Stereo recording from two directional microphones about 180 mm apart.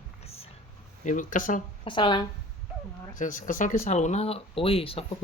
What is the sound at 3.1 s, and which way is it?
Speech, 45° left (ahead or behind).